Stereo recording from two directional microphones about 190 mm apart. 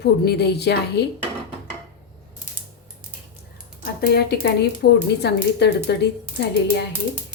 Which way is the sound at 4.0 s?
55° left (ahead or behind).